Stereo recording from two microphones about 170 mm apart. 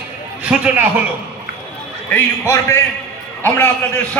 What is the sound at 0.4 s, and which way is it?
Speech, 5° right (ahead or behind).